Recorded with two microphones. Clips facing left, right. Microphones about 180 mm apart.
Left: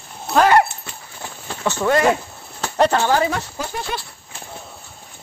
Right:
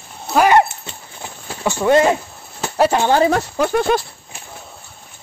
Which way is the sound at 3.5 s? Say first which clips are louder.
Right 11 dB; 70° right (ahead or behind).